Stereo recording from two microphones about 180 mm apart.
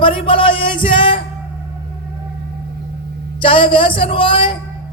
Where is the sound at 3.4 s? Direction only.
30° left (ahead or behind).